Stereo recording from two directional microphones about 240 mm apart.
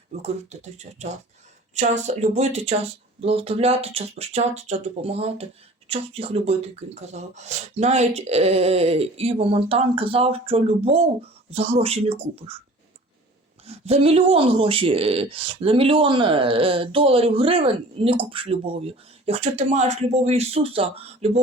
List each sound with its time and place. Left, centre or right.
0.1 s speech: right
13.7 s speech: right